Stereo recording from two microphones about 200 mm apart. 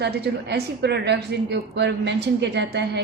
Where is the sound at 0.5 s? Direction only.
55° right (ahead or behind).